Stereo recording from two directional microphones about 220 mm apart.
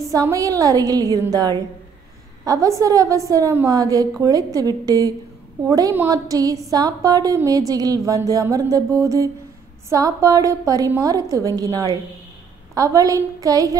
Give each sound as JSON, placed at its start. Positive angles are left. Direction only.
{"t": 0.1, "sound": "a woman's voice", "side_deg": -15}